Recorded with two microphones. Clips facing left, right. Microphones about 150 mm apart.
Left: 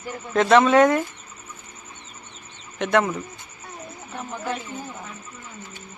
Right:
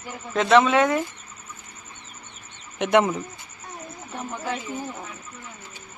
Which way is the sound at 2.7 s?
20° right (ahead or behind).